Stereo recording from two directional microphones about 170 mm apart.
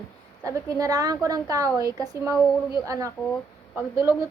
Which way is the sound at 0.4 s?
20° right (ahead or behind).